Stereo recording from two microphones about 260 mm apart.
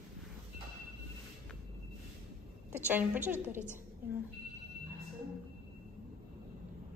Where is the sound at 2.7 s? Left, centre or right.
Centre.